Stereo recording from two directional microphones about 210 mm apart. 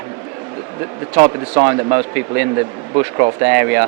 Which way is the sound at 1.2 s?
20° right (ahead or behind).